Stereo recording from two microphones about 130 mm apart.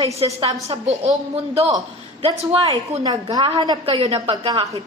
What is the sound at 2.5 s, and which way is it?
Speech, 50° right (ahead or behind).